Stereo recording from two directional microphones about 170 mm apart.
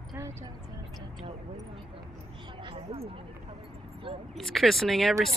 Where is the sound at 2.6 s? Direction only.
35° right (ahead or behind).